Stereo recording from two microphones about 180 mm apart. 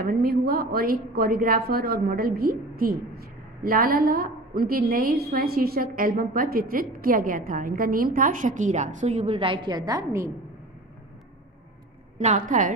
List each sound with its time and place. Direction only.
0.0 s a woman's voice: 55° right (ahead or behind); by 10.3 s 15° right (ahead or behind)
12.2 s a woman's voice: 45° right (ahead or behind)